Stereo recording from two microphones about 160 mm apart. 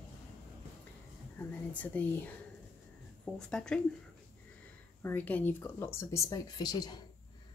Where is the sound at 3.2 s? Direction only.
5° left (ahead or behind).